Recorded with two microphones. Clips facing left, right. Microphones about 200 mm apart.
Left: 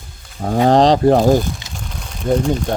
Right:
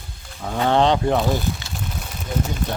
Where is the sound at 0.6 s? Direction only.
35° left (ahead or behind).